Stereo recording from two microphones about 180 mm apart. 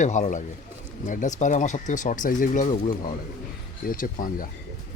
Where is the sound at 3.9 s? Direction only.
50° left (ahead or behind).